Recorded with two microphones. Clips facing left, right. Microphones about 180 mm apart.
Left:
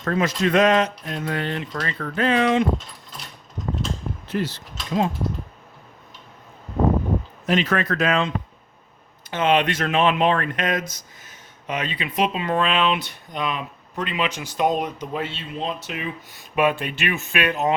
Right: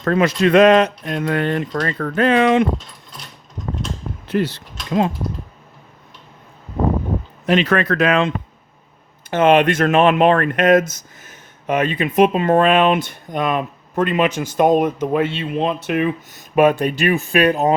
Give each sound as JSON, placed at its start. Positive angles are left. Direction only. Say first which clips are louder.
{"t": 0.0, "sound": "speech", "louder": "right 6 dB", "side_deg": -65}
{"t": 4.3, "sound": "speech", "louder": "right 6 dB", "side_deg": -65}
{"t": 7.4, "sound": "speech", "louder": "right 6 dB", "side_deg": -70}
{"t": 9.3, "sound": "speech", "louder": "right 7 dB", "side_deg": -50}
{"t": 16.3, "sound": "speech", "louder": "right 6 dB", "side_deg": -45}